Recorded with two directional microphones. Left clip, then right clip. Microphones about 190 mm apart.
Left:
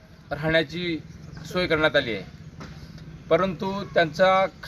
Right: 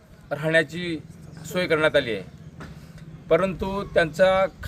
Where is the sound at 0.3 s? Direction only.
35° right (ahead or behind).